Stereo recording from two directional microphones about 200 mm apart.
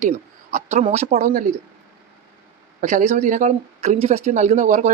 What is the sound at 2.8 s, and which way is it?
Speech, 40° right (ahead or behind).